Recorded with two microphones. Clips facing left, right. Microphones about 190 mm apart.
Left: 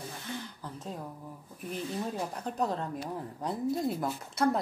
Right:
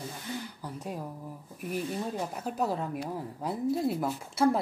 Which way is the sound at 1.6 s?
10° right (ahead or behind).